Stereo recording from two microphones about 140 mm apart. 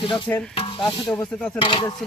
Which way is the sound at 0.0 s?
35° left (ahead or behind).